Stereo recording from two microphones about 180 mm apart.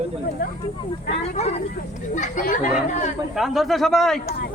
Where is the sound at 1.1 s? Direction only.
35° left (ahead or behind).